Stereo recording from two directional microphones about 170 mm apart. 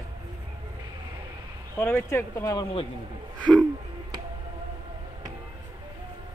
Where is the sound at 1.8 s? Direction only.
15° left (ahead or behind).